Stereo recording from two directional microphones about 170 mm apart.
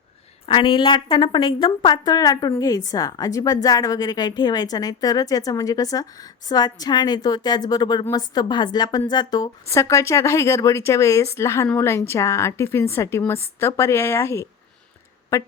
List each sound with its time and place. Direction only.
0.4 s a woman's voice: 30° left (ahead or behind)